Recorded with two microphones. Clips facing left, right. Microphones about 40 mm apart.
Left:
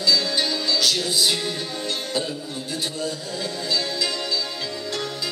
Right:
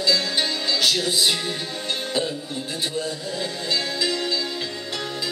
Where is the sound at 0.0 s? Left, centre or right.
Right.